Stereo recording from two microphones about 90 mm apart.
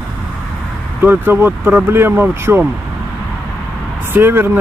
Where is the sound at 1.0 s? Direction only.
25° right (ahead or behind).